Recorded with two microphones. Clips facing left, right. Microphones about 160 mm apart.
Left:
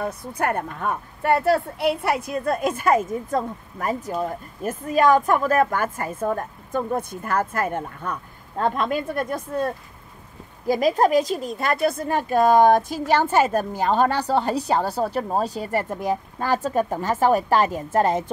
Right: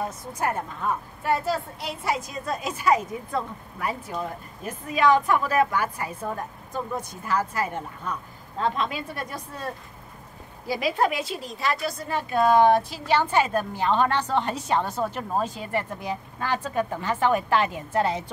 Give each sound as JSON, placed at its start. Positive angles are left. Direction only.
{"t": 0.3, "sound": "a woman's voice", "side_deg": 60}
{"t": 10.7, "sound": "a woman's voice", "side_deg": 45}